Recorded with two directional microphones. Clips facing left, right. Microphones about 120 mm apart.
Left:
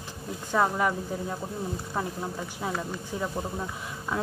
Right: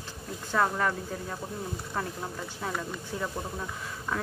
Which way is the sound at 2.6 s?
10° left (ahead or behind).